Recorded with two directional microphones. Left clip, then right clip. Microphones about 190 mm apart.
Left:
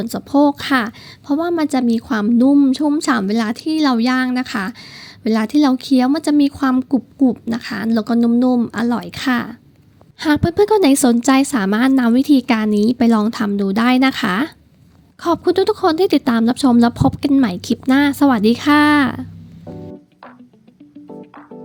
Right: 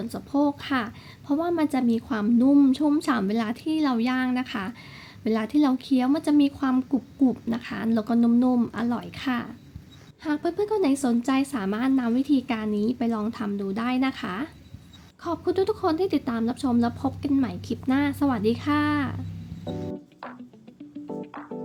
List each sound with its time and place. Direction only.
0.0 s a woman's voice: 40° left (ahead or behind)
19.6 s music: centre (ahead or behind)